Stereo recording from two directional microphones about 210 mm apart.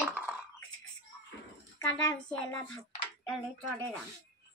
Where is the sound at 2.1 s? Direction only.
10° left (ahead or behind).